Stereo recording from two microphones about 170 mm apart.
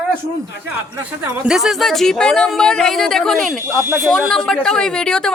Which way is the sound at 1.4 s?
5° right (ahead or behind).